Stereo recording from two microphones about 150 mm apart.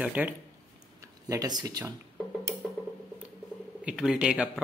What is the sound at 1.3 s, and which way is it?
Speech, 25° right (ahead or behind).